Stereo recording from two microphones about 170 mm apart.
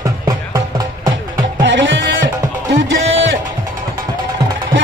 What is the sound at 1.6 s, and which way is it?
Music, 90° right.